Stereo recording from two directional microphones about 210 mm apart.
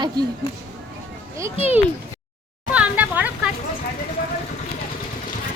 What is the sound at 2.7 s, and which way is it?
Speech, 5° right (ahead or behind).